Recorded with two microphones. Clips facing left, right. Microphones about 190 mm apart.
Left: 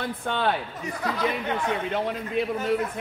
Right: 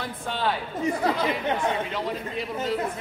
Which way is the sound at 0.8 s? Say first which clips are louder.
Right 7 dB; 30° right (ahead or behind).